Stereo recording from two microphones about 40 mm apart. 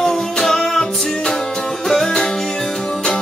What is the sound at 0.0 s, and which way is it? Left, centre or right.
Music, centre.